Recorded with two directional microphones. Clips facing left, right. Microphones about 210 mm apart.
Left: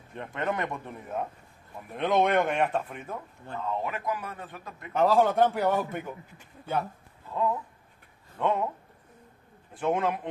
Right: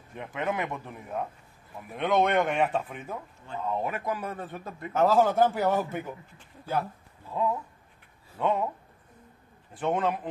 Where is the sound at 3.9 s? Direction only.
30° right (ahead or behind).